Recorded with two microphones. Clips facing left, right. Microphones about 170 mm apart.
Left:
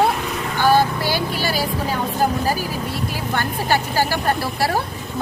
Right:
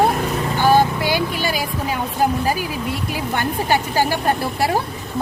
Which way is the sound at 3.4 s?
15° right (ahead or behind).